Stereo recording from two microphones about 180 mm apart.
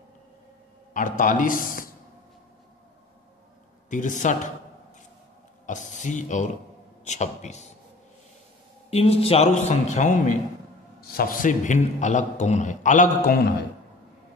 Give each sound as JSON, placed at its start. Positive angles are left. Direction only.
{"t": 0.9, "sound": "a man's voice", "side_deg": 45}
{"t": 3.9, "sound": "a man's voice", "side_deg": 45}
{"t": 5.7, "sound": "a man's voice", "side_deg": 45}
{"t": 8.9, "sound": "a man's voice", "side_deg": 35}
{"t": 11.0, "sound": "a man's voice", "side_deg": 60}